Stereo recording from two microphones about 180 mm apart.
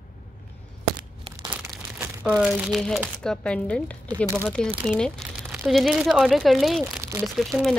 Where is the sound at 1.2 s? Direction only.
30° right (ahead or behind).